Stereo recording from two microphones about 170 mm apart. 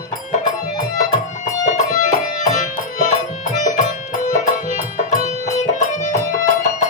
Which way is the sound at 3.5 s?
45° left (ahead or behind).